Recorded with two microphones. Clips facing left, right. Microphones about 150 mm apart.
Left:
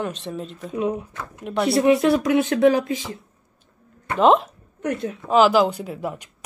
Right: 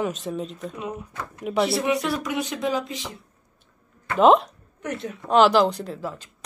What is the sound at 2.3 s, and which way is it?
Speech, 60° left (ahead or behind).